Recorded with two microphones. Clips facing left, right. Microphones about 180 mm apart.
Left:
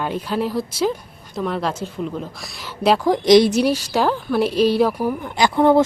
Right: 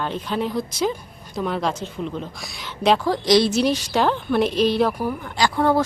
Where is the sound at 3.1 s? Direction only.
20° left (ahead or behind).